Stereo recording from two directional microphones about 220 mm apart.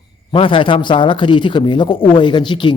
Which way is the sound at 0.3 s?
25° left (ahead or behind).